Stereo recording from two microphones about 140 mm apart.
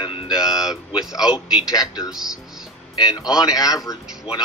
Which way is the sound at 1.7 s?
25° left (ahead or behind).